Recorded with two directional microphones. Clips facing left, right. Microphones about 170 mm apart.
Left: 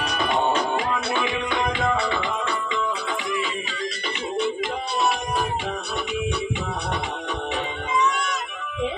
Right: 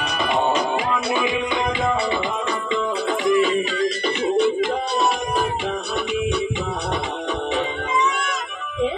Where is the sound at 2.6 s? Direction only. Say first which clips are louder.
Right 5 dB; 35° right (ahead or behind).